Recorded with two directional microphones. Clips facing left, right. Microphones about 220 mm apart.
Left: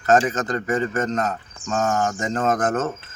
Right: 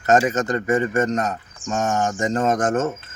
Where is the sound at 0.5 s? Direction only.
25° right (ahead or behind).